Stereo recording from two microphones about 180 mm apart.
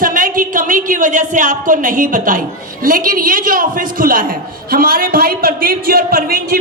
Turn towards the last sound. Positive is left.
turn(degrees=-60)  # may be behind; listen again after turning